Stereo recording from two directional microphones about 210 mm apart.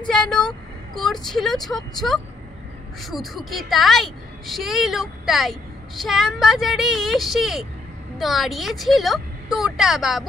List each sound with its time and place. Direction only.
0.1 s speech: 5° left (ahead or behind)